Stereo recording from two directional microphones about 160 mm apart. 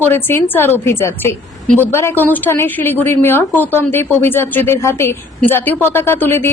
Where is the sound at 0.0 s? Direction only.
15° left (ahead or behind).